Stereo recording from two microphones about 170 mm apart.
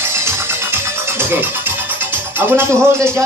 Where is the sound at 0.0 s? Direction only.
15° right (ahead or behind).